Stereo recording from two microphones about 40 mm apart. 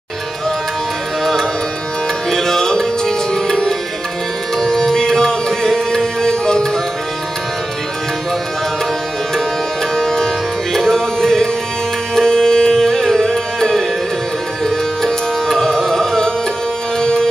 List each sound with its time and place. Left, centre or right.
2.3 s music: centre
9.9 s music: centre